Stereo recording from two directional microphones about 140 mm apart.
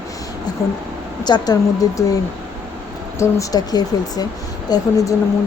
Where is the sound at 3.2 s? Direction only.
25° left (ahead or behind).